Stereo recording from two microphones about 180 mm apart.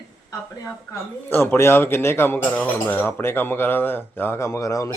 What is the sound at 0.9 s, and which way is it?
Speech, 10° left (ahead or behind).